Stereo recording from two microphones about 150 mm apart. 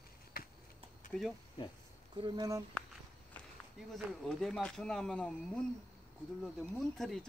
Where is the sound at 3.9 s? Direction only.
Centre (ahead or behind).